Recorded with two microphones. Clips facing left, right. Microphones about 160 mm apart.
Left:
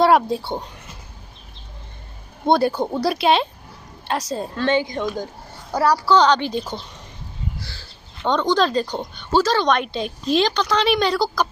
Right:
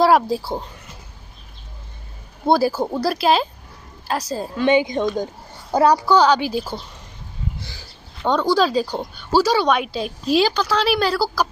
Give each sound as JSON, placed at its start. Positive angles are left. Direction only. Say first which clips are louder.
{"t": 0.0, "sound": "speech", "louder": "even", "side_deg": 0}
{"t": 2.4, "sound": "speech", "louder": "even", "side_deg": -5}
{"t": 4.6, "sound": "a child's voice", "louder": "right 4 dB", "side_deg": -15}
{"t": 6.1, "sound": "speech", "louder": "right 1 dB", "side_deg": -10}
{"t": 8.2, "sound": "speech", "louder": "right 1 dB", "side_deg": -10}